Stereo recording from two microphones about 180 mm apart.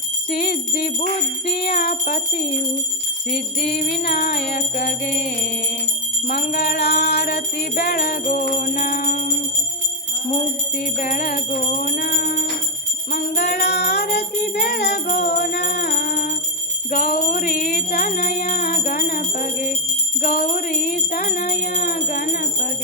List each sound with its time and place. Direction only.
0.3 s music: 55° left (ahead or behind)
3.2 s jingle bell: 55° left (ahead or behind)
10.8 s music: 45° left (ahead or behind); by 15.2 s 70° left (ahead or behind)
15.2 s music: 55° left (ahead or behind)
20.2 s jingle bell: 50° left (ahead or behind)